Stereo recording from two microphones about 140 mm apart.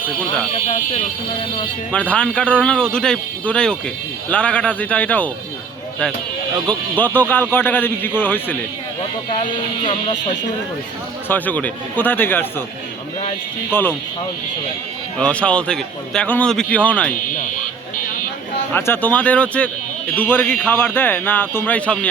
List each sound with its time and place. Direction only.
1.9 s a man's voice: 10° left (ahead or behind)
6.7 s a man's voice: 10° left (ahead or behind)
9.4 s speech: 35° left (ahead or behind)
11.3 s a man's voice: 10° left (ahead or behind)
13.7 s a man's voice: 15° left (ahead or behind)
15.2 s a man's voice: 10° left (ahead or behind)
18.7 s a man's voice: 15° left (ahead or behind)